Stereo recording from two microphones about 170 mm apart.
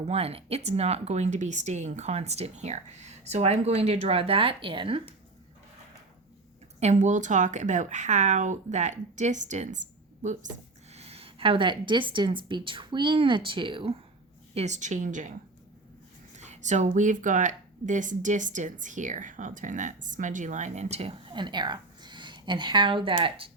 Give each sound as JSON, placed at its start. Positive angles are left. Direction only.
{"t": 0.1, "sound": "speech", "side_deg": -35}
{"t": 6.7, "sound": "a woman's voice", "side_deg": -40}
{"t": 14.5, "sound": "speech", "side_deg": -45}
{"t": 16.3, "sound": "speech", "side_deg": -45}